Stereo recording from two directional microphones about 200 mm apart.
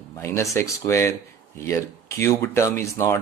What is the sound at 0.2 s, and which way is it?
Speech, 15° left (ahead or behind).